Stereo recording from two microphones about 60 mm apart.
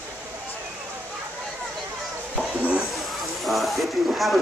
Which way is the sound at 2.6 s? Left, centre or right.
Right.